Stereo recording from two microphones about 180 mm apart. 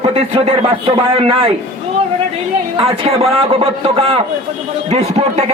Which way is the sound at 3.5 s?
30° right (ahead or behind).